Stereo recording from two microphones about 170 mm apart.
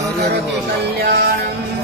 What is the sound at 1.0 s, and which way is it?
Music, 75° right (ahead or behind).